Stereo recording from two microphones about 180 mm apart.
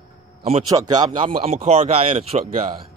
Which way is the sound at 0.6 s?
25° right (ahead or behind).